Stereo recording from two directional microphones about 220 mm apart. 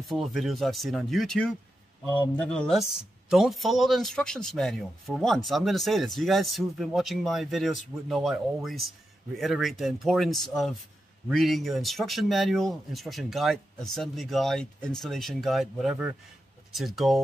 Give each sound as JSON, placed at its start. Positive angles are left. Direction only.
{"t": 0.1, "sound": "a man's voice", "side_deg": 0}